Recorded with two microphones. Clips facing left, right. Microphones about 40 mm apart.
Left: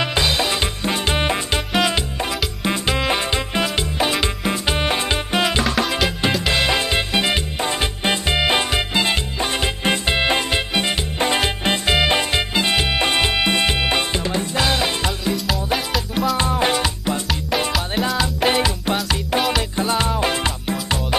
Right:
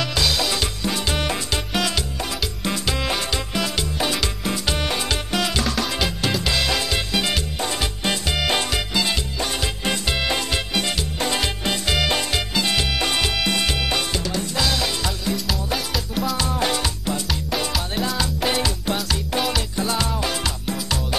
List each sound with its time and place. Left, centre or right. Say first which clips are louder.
0.0 s music: left 3 dB; left
5.9 s music: left 4 dB; centre
6.4 s music: left 4 dB; left
15.9 s music: left 4 dB; centre
16.3 s music: left 4 dB; left
17.7 s music: left 3 dB; centre
18.4 s music: left 5 dB; left